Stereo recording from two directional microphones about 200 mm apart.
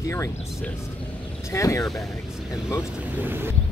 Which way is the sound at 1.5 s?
15° left (ahead or behind).